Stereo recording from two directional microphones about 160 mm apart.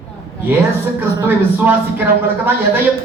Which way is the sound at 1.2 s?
10° right (ahead or behind).